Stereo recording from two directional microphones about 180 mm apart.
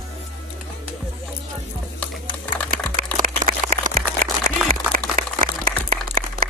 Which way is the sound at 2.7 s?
50° right (ahead or behind).